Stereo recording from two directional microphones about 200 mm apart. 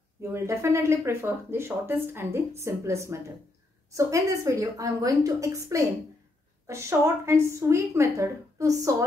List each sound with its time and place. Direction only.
0.2 s speech: 15° right (ahead or behind)